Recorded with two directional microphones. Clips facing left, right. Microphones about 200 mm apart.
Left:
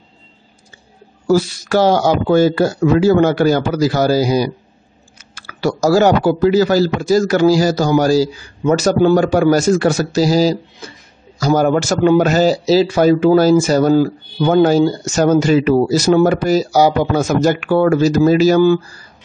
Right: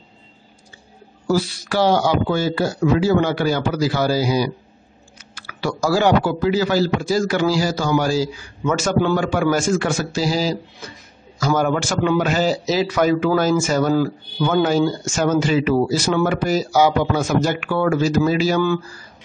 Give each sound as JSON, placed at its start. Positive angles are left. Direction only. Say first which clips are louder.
{"t": 1.2, "sound": "a man's voice", "louder": "left 6 dB", "side_deg": 45}